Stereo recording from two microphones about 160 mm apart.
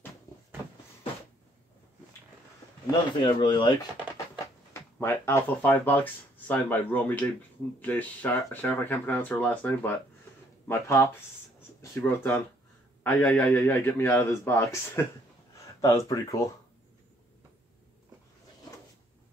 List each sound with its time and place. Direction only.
2.9 s speech: 30° left (ahead or behind)
4.7 s speech: 15° left (ahead or behind)